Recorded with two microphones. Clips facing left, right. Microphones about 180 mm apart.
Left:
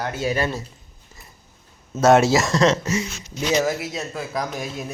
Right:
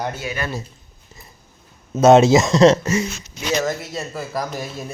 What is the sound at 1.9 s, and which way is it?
Speech, 20° right (ahead or behind).